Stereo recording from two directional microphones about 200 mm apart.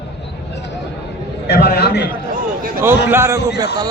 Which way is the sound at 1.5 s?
50° left (ahead or behind).